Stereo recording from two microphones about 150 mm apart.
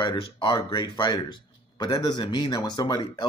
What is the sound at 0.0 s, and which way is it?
Speech, 35° left (ahead or behind).